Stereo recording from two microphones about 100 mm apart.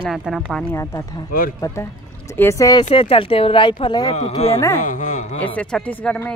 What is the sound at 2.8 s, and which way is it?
Speech, 80° left.